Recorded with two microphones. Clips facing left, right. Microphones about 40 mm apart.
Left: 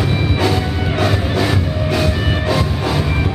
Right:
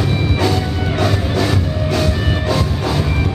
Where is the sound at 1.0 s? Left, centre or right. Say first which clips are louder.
Even; centre.